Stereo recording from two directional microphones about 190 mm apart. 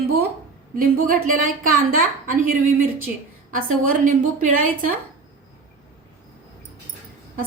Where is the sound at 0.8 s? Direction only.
45° right (ahead or behind).